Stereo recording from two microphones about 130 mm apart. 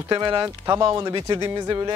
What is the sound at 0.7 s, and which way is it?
Speech, 35° right (ahead or behind).